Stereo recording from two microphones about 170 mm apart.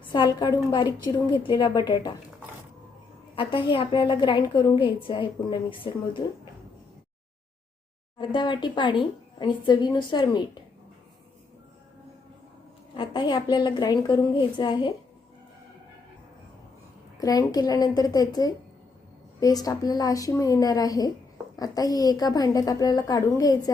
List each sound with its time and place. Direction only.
0.1 s speech: 25° left (ahead or behind)
3.3 s speech: 30° left (ahead or behind)
8.2 s speech: 25° left (ahead or behind)
12.9 s speech: 25° left (ahead or behind)
17.2 s speech: 20° left (ahead or behind)